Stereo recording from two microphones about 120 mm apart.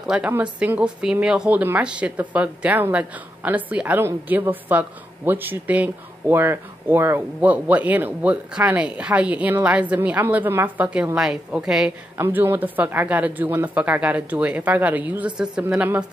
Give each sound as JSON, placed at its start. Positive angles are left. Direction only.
{"t": 0.0, "sound": "a woman's voice", "side_deg": -10}
{"t": 12.2, "sound": "speech", "side_deg": -20}